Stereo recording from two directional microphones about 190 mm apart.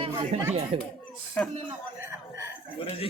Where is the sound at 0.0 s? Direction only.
30° right (ahead or behind).